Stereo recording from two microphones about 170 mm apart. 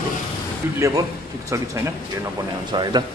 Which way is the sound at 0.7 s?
15° right (ahead or behind).